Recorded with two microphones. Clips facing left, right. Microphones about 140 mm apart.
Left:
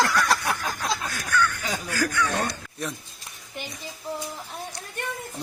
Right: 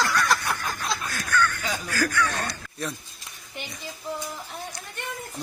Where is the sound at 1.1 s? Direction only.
10° left (ahead or behind).